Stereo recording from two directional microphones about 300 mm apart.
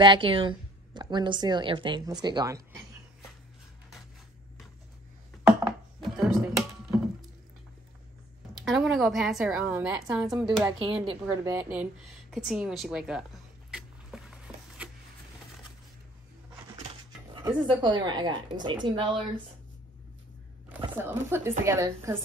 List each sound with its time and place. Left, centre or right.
0.0 s a woman's voice: centre
6.0 s a sound: centre
8.5 s a woman's voice: centre
10.6 s a woman's voice: centre
13.7 s a sound: centre
17.4 s a woman's voice: centre
20.6 s a woman's voice: centre